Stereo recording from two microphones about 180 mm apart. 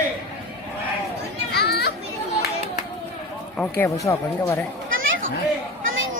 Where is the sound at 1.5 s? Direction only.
65° left (ahead or behind).